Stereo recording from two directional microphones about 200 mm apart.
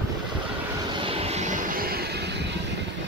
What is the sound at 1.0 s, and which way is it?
Vehicle, 30° right (ahead or behind).